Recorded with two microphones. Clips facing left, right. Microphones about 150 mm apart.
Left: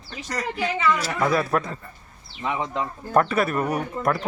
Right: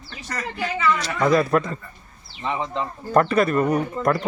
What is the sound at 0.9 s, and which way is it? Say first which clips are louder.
A man's voice: right 3 dB; 5° left (ahead or behind).